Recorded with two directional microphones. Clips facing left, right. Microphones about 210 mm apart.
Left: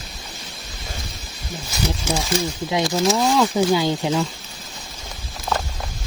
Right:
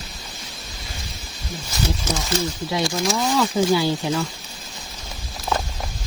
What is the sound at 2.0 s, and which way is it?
Speech, 15° left (ahead or behind).